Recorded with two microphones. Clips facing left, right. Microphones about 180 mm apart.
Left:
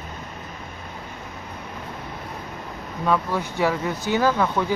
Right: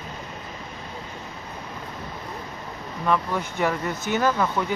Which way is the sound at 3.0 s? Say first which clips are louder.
Left 1 dB; 10° left (ahead or behind).